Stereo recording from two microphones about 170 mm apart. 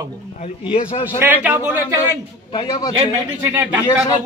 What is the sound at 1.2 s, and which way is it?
Speech, 10° right (ahead or behind).